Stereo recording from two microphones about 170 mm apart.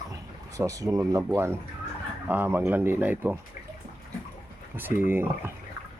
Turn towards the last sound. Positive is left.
turn(degrees=-10)  # may be behind; listen again after turning